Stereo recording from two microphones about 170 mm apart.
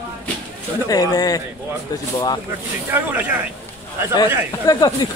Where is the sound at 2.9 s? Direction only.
10° right (ahead or behind).